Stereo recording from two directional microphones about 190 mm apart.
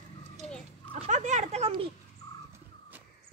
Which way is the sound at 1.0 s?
40° right (ahead or behind).